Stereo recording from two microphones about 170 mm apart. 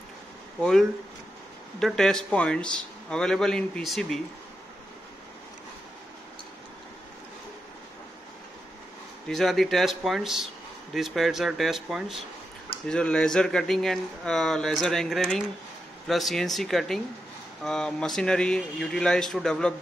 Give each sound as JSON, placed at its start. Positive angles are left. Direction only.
{"t": 0.6, "sound": "speech", "side_deg": 5}
{"t": 9.3, "sound": "speech", "side_deg": 0}